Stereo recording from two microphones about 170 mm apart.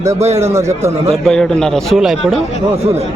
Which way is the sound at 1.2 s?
5° left (ahead or behind).